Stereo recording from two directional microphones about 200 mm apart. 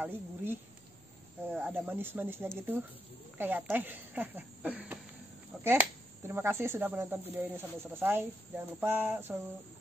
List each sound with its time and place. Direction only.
0.0 s speech: 10° right (ahead or behind)